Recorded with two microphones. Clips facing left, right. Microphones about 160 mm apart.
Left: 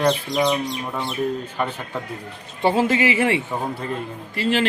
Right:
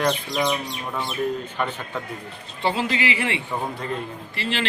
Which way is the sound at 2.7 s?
45° left (ahead or behind).